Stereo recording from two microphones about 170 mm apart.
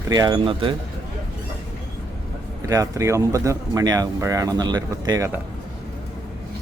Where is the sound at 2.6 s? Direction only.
20° right (ahead or behind).